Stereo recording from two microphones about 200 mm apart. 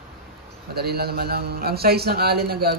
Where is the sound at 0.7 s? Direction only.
50° right (ahead or behind).